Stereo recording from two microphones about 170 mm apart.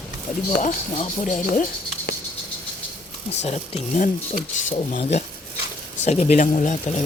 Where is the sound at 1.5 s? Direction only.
50° left (ahead or behind).